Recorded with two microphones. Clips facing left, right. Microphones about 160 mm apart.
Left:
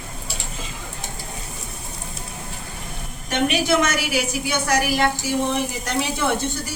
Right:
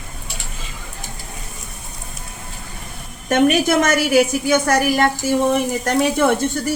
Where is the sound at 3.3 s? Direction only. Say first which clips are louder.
Right 5 dB; 45° right (ahead or behind).